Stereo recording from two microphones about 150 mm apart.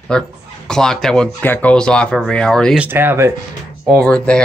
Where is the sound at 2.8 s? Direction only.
15° right (ahead or behind).